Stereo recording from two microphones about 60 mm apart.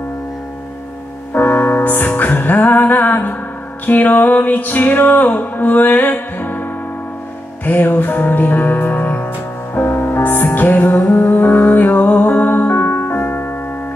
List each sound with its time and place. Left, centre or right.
1.3 s music: left
7.6 s music: left